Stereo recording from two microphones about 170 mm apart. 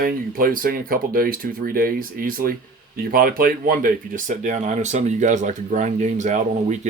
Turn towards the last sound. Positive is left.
turn(degrees=-45)  # may be behind; listen again after turning